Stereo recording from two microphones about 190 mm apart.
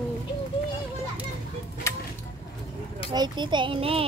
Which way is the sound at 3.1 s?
20° right (ahead or behind).